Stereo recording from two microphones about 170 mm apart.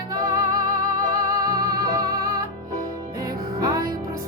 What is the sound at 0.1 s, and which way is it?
Music, 25° right (ahead or behind).